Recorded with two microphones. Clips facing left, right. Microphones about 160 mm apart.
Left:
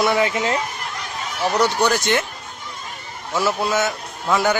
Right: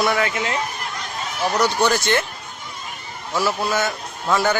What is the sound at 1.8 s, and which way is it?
Speech, 15° left (ahead or behind).